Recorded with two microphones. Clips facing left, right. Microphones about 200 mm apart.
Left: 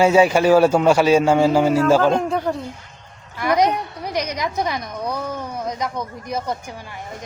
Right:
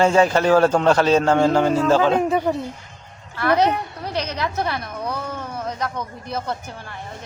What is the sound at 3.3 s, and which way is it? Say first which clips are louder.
A woman's voice: even; 15° left (ahead or behind).